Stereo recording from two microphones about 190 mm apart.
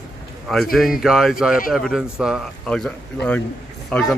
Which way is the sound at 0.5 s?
Centre (ahead or behind).